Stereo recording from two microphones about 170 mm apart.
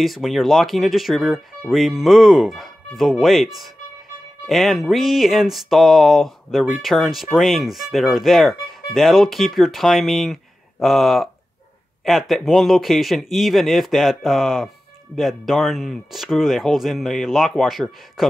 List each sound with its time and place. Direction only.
0.0 s speech: centre (ahead or behind)